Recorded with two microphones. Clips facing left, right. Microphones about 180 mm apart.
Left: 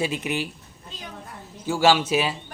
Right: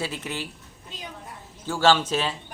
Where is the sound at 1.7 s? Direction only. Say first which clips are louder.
Left 1 dB; 10° left (ahead or behind).